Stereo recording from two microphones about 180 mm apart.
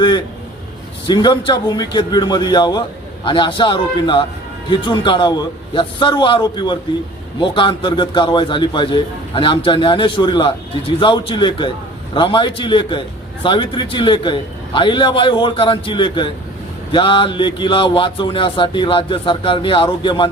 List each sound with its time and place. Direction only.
1.0 s speech: 25° left (ahead or behind)